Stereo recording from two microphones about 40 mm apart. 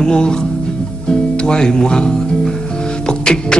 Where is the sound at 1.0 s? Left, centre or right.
Centre.